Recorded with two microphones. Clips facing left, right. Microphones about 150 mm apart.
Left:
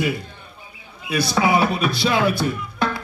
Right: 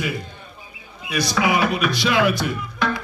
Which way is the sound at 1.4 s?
30° left (ahead or behind).